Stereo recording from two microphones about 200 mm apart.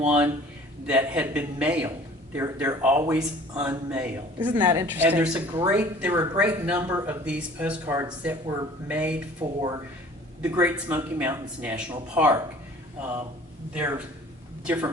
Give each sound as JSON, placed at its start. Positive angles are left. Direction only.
{"t": 0.0, "sound": "a man's voice", "side_deg": -5}
{"t": 4.4, "sound": "a woman's voice", "side_deg": -20}
{"t": 4.9, "sound": "a man's voice", "side_deg": -10}
{"t": 9.4, "sound": "a woman's voice", "side_deg": -20}
{"t": 10.6, "sound": "a man's voice", "side_deg": -10}
{"t": 14.6, "sound": "speech", "side_deg": -10}